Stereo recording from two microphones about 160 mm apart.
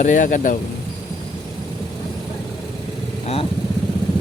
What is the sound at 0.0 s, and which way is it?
Speech, 50° left (ahead or behind).